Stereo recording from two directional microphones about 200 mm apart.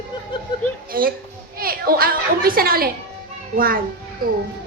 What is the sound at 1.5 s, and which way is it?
A woman's voice, 45° right (ahead or behind).